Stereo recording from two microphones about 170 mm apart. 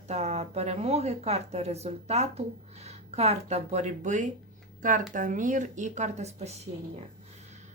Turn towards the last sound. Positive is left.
turn(degrees=-40)  # may be behind; listen again after turning